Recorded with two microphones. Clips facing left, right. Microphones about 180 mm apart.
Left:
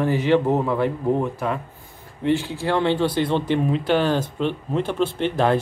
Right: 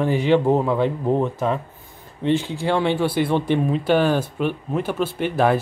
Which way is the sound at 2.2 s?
20° right (ahead or behind).